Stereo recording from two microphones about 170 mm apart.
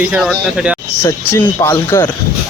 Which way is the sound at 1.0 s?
15° left (ahead or behind).